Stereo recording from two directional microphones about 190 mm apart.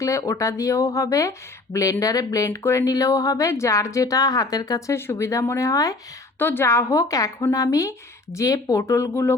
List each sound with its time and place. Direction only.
0.0 s speech: 15° left (ahead or behind)